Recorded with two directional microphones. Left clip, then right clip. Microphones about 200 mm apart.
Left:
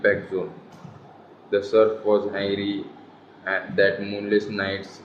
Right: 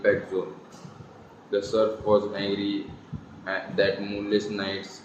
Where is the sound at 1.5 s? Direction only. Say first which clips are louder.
Left 5 dB; 25° left (ahead or behind).